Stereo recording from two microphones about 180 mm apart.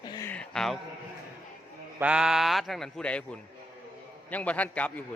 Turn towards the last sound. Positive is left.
turn(degrees=10)  # may be behind; listen again after turning